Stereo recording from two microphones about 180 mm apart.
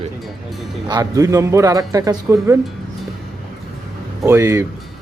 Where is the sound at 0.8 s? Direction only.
20° right (ahead or behind).